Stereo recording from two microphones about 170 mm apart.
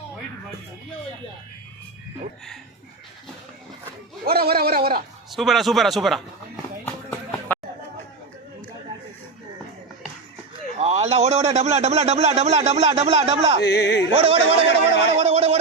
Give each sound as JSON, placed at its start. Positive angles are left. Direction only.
{"t": 4.3, "sound": "speech", "side_deg": -65}
{"t": 5.3, "sound": "speech", "side_deg": 0}
{"t": 7.3, "sound": "a sound", "side_deg": 10}
{"t": 10.8, "sound": "a man's voice", "side_deg": -40}
{"t": 13.7, "sound": "yodeling", "side_deg": 75}
{"t": 14.1, "sound": "a man's voice", "side_deg": -35}
{"t": 15.1, "sound": "a sound", "side_deg": -40}